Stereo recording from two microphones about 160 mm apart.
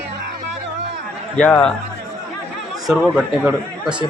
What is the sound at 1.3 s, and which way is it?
Speech, 10° left (ahead or behind).